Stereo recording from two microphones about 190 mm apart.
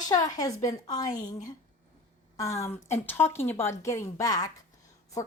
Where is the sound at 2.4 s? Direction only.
15° left (ahead or behind).